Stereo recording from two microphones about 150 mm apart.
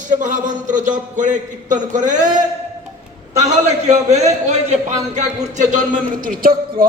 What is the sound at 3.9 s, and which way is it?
A man's voice, 50° right (ahead or behind).